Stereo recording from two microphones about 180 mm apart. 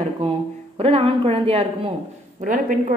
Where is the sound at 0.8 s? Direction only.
35° right (ahead or behind).